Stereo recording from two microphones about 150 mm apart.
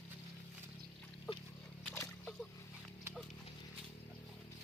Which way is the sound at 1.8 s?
15° left (ahead or behind).